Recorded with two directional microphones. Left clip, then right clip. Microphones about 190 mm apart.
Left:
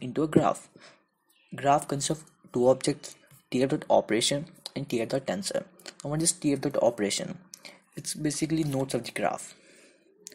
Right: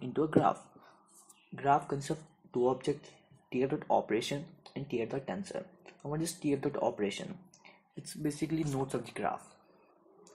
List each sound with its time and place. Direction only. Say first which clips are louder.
0.0 s speech: left 4 dB; 40° left (ahead or behind)
7.9 s speech: left 6 dB; 30° left (ahead or behind)